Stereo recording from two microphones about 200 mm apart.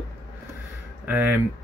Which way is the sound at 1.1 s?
5° right (ahead or behind).